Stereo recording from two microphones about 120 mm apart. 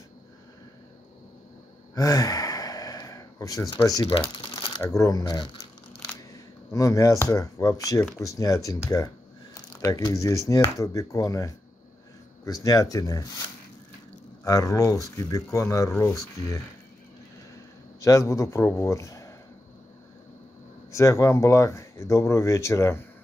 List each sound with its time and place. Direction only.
2.0 s sigh: 30° left (ahead or behind)
4.4 s shuffling cards: 45° left (ahead or behind)
4.8 s speech: 30° left (ahead or behind)
6.7 s speech: 25° left (ahead or behind)
9.8 s speech: 25° left (ahead or behind)
14.4 s speech: 30° left (ahead or behind)
18.0 s speech: 25° left (ahead or behind)
20.9 s speech: 25° left (ahead or behind)